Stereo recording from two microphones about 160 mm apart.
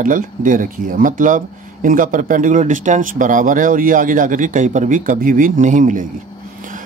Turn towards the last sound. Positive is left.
turn(degrees=-55)  # may be behind; listen again after turning